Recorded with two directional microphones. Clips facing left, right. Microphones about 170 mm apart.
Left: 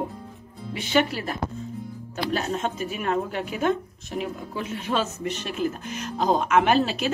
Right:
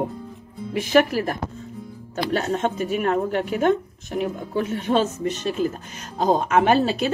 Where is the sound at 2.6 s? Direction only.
45° right (ahead or behind).